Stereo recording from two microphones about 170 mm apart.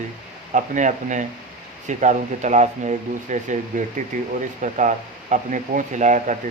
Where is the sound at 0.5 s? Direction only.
45° right (ahead or behind).